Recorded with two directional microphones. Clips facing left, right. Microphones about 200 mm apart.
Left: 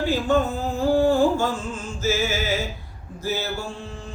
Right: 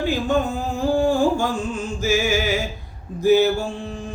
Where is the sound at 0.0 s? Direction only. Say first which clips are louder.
Even; 15° right (ahead or behind).